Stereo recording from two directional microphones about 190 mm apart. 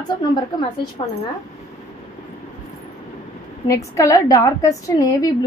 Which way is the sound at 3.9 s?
15° left (ahead or behind).